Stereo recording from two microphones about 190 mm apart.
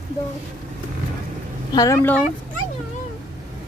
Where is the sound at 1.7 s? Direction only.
15° left (ahead or behind).